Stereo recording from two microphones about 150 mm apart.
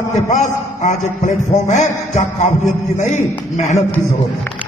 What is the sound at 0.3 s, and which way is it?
A man's voice, 55° left (ahead or behind).